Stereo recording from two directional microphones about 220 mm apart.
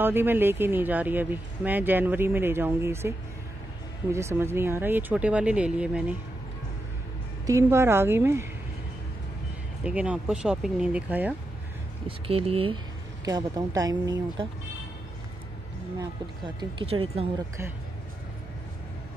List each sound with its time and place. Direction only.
0.0 s speech: 10° right (ahead or behind)
7.4 s speech: 15° right (ahead or behind)
9.8 s speech: 5° right (ahead or behind)
12.1 s speech: 25° right (ahead or behind)
16.7 s speech: 25° right (ahead or behind)